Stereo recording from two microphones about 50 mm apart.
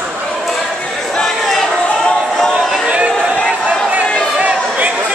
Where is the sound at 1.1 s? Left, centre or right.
Centre.